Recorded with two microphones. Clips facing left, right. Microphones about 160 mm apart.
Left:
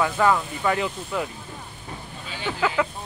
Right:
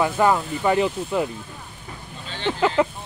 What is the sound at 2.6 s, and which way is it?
Speech, 25° right (ahead or behind).